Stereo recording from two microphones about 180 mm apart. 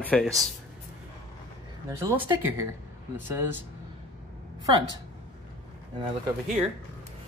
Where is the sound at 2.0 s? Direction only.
10° right (ahead or behind).